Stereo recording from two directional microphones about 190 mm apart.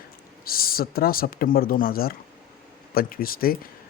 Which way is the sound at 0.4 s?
50° left (ahead or behind).